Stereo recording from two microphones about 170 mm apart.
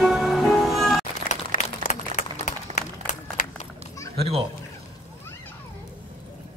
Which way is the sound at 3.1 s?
40° left (ahead or behind).